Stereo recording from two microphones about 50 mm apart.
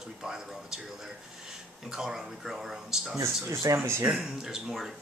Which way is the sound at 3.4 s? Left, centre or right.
Right.